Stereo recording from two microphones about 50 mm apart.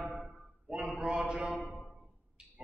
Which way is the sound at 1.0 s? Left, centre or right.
Centre.